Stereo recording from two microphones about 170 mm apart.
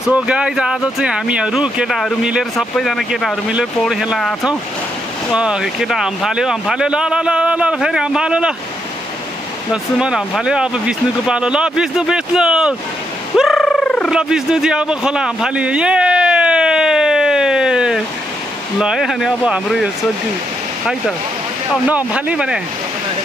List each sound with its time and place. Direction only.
0.0 s speech: 5° right (ahead or behind)
9.7 s speech: 5° right (ahead or behind)
13.4 s a sound: centre (ahead or behind)
18.8 s speech: centre (ahead or behind)
21.8 s speech: 10° right (ahead or behind)